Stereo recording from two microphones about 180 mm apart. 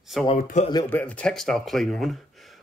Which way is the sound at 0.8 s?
10° left (ahead or behind).